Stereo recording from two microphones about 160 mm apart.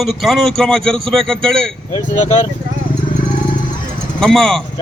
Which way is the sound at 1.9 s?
45° left (ahead or behind).